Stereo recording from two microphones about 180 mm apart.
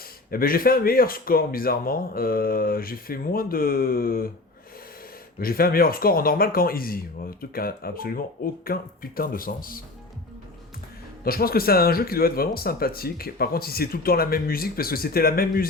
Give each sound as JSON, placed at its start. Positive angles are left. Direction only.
{"t": 0.3, "sound": "speech", "side_deg": 55}
{"t": 5.4, "sound": "speech", "side_deg": 55}
{"t": 11.2, "sound": "speech", "side_deg": 55}